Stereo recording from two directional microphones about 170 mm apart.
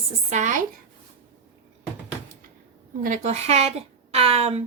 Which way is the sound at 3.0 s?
45° right (ahead or behind).